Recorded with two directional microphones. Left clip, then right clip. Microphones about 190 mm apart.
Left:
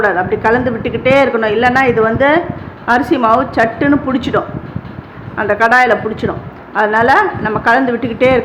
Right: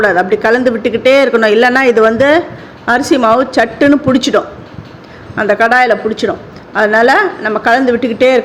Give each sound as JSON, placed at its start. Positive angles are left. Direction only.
{"t": 0.0, "sound": "speech", "side_deg": -25}